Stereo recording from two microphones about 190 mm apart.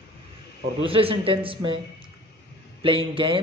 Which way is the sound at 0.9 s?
30° right (ahead or behind).